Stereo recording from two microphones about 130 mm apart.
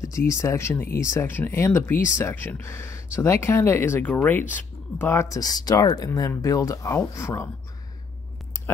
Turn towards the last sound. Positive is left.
turn(degrees=20)  # may be behind; listen again after turning